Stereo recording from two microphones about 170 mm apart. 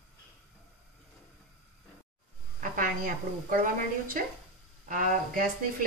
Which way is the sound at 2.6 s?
50° right (ahead or behind).